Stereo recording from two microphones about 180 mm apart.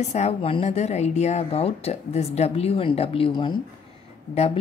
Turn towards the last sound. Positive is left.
turn(degrees=35)  # may be behind; listen again after turning